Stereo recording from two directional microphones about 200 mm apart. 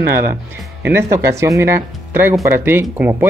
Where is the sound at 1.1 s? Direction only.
15° right (ahead or behind).